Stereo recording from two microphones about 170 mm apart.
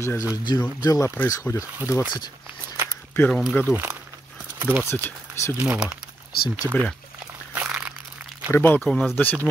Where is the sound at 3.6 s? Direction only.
10° right (ahead or behind).